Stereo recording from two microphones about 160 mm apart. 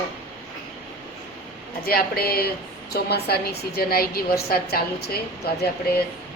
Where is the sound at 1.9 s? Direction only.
70° left (ahead or behind).